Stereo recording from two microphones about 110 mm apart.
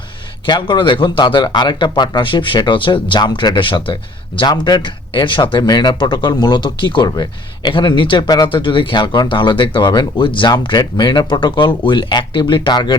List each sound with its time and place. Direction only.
0.4 s speech: 45° left (ahead or behind)